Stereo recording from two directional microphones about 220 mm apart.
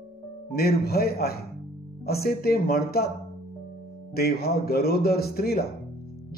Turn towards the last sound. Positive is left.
turn(degrees=45)  # may be behind; listen again after turning